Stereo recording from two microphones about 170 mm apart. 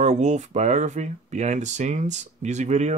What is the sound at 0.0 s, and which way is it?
Speech, 45° right (ahead or behind).